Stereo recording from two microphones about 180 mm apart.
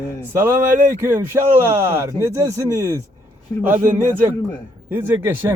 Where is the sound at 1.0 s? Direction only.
10° right (ahead or behind).